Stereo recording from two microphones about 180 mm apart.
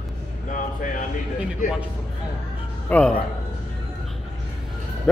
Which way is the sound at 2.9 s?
10° left (ahead or behind).